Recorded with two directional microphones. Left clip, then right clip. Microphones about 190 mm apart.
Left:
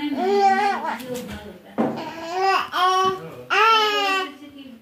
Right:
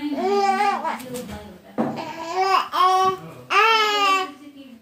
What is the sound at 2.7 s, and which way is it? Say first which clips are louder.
Babbling: right 1 dB; 15° right (ahead or behind).